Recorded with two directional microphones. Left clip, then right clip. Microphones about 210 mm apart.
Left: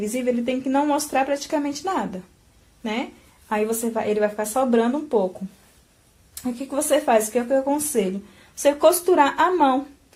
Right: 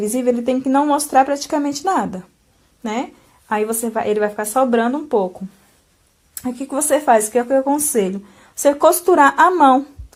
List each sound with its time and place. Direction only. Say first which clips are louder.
0.0 s a woman's voice: right 6 dB; 30° right (ahead or behind)
6.3 s a woman's voice: right 3 dB; 30° right (ahead or behind)